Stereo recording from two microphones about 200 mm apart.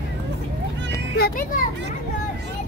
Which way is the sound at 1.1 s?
50° left (ahead or behind).